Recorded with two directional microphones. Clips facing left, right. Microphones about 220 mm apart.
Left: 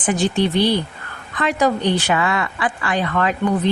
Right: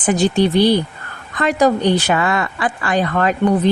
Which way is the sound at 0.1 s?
40° right (ahead or behind).